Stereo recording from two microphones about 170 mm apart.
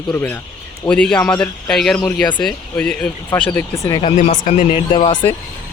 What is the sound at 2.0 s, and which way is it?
Speech, 25° left (ahead or behind).